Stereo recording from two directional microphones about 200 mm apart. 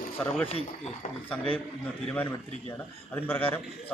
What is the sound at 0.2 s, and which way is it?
Speech, 5° left (ahead or behind).